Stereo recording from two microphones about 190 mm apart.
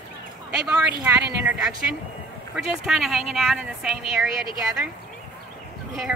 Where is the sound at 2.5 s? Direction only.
5° right (ahead or behind).